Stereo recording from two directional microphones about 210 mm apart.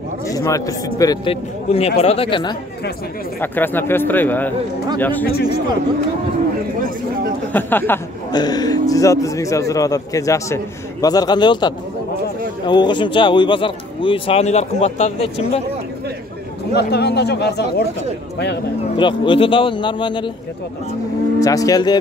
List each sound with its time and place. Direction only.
0.3 s speech: 15° left (ahead or behind)
3.3 s speech: 10° left (ahead or behind)
5.2 s speech: 45° left (ahead or behind)
7.5 s speech: 10° left (ahead or behind); by 15.6 s 30° left (ahead or behind)
16.7 s speech: 50° left (ahead or behind)
18.9 s speech: 25° left (ahead or behind)
21.4 s speech: 15° left (ahead or behind)